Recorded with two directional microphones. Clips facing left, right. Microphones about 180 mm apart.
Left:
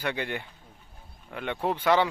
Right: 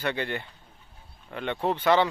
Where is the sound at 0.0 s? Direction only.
10° left (ahead or behind).